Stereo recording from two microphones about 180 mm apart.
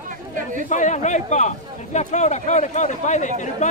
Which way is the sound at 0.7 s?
40° left (ahead or behind).